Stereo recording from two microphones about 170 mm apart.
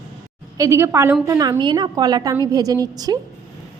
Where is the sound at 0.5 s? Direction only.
15° right (ahead or behind).